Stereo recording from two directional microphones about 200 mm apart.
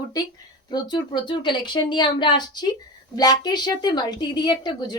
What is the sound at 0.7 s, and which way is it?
A woman's voice, 20° left (ahead or behind).